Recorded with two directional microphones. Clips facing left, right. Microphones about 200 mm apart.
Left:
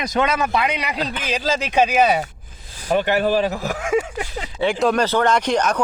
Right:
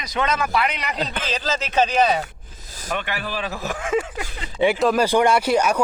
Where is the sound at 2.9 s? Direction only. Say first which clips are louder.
Left 10 dB; 40° left (ahead or behind).